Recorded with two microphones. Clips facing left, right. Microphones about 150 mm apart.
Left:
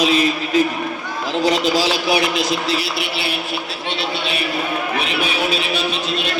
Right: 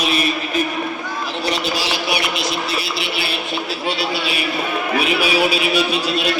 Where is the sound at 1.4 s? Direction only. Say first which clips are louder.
Left 5 dB; 90° left.